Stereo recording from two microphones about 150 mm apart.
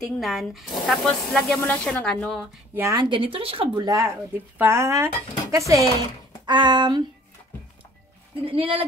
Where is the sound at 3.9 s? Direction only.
25° right (ahead or behind).